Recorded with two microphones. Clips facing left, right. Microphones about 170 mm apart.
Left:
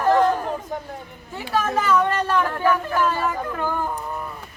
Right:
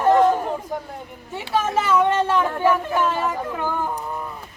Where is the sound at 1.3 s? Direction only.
25° right (ahead or behind).